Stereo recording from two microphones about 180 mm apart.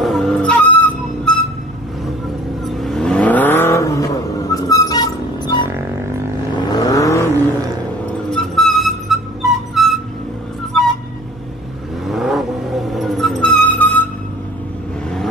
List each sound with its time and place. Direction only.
0.0 s a sound: centre (ahead or behind)
2.6 s vehicle: centre (ahead or behind); by 7.3 s 15° left (ahead or behind)
8.3 s music: centre (ahead or behind)
10.7 s vehicle: centre (ahead or behind)
12.1 s car: centre (ahead or behind)